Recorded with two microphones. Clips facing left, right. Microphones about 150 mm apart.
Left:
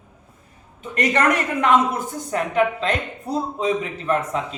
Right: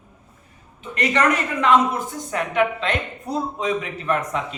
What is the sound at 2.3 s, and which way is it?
A woman's voice, 35° left (ahead or behind).